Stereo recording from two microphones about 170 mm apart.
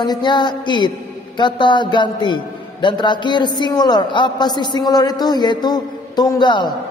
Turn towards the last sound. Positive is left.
turn(degrees=25)  # may be behind; listen again after turning